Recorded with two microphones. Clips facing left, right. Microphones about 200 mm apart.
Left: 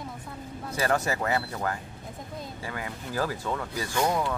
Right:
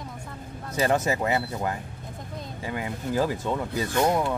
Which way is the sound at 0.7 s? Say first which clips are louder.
Right 3 dB; 20° right (ahead or behind).